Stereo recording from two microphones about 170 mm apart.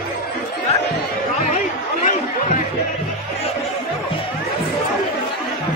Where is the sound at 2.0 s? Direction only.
45° left (ahead or behind).